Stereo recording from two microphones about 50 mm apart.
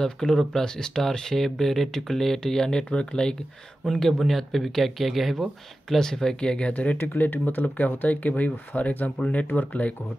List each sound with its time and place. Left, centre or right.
0.0 s speech: centre
6.7 s speech: left
7.0 s speech: left